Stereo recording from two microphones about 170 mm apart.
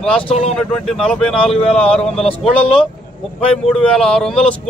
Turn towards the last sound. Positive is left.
turn(degrees=5)  # may be behind; listen again after turning